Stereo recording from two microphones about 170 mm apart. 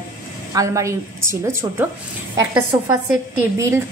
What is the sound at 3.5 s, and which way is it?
Speech, 15° right (ahead or behind).